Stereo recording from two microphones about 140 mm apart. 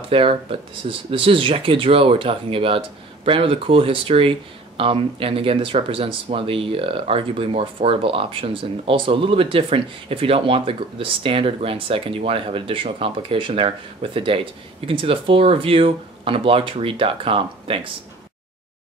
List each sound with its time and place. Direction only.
0.1 s speech: 40° right (ahead or behind)